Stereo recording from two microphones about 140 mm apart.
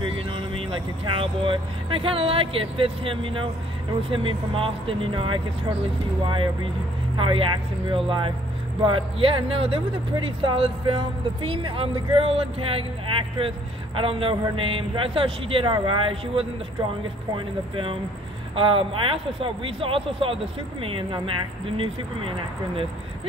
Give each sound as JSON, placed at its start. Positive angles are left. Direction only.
{"t": 0.0, "sound": "speech", "side_deg": -40}
{"t": 18.5, "sound": "speech", "side_deg": -40}